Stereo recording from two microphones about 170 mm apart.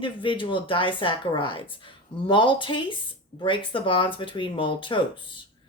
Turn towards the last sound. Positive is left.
turn(degrees=30)  # may be behind; listen again after turning